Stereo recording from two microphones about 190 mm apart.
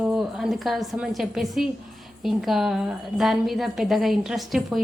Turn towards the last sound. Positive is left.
turn(degrees=0)  # may be behind; listen again after turning